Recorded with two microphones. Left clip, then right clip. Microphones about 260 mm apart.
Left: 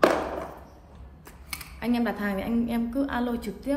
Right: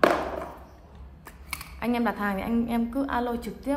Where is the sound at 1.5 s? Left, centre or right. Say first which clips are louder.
Right 1 dB; right.